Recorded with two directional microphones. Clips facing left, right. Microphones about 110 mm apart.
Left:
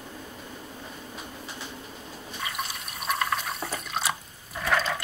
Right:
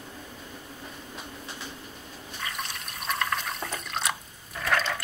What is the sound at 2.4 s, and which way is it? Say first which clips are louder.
Water: left 2 dB; 5° left (ahead or behind).